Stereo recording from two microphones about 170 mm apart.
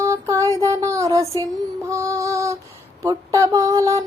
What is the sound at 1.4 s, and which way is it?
Female singing, 20° right (ahead or behind).